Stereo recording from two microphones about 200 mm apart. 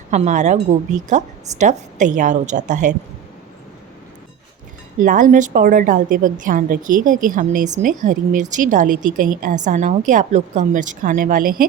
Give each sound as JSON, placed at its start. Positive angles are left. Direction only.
{"t": 0.1, "sound": "a woman's voice", "side_deg": -35}
{"t": 4.9, "sound": "a woman's voice", "side_deg": -40}